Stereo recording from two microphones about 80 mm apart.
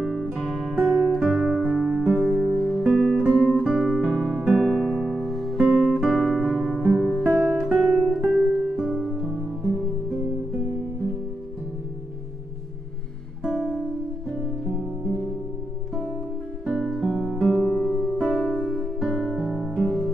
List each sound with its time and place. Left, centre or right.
0.0 s music: centre
2.1 s music: centre
2.5 s music: centre
3.3 s music: centre
5.6 s guitar: centre
6.9 s music: centre
7.3 s guitar: centre
7.8 s music: centre
13.4 s music: centre
16.6 s music: centre
17.8 s music: centre
18.1 s music: centre